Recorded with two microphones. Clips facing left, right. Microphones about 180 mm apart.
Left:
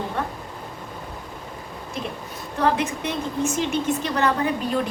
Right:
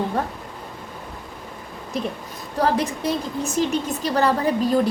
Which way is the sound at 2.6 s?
35° right (ahead or behind).